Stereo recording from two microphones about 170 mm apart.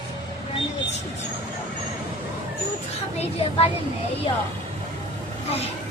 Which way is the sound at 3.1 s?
35° left (ahead or behind).